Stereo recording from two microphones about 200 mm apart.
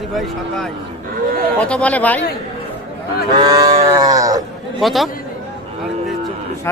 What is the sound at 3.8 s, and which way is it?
Livestock, 15° right (ahead or behind).